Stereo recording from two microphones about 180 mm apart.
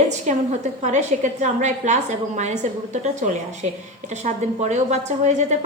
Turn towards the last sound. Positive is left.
turn(degrees=-40)  # may be behind; listen again after turning